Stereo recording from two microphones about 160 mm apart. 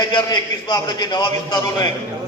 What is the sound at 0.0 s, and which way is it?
A man's voice, 25° left (ahead or behind).